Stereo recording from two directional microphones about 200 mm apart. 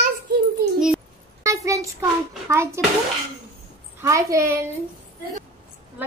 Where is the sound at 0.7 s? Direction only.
Centre (ahead or behind).